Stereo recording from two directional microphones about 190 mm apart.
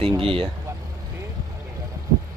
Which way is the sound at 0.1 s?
30° right (ahead or behind).